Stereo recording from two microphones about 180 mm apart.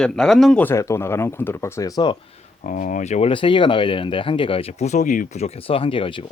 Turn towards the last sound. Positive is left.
turn(degrees=30)  # may be behind; listen again after turning